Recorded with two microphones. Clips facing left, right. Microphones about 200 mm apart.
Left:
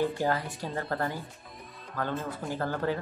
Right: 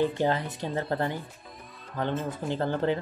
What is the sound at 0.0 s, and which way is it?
Speech, 20° right (ahead or behind).